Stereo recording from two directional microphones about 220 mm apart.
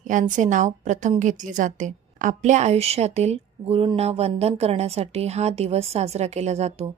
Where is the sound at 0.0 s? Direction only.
35° right (ahead or behind).